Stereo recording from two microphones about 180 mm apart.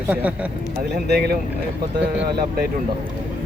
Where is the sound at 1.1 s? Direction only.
60° right (ahead or behind).